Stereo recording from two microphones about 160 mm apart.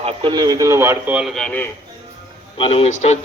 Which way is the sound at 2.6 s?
35° left (ahead or behind).